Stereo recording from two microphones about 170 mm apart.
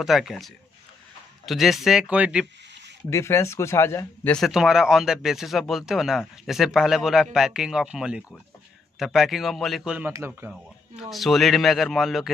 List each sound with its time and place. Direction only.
0.0 s speech: centre (ahead or behind)
3.1 s speech: 15° left (ahead or behind)
4.5 s speech: 5° right (ahead or behind)
10.5 s speech: centre (ahead or behind)